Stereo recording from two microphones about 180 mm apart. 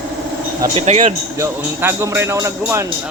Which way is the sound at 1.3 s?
15° right (ahead or behind).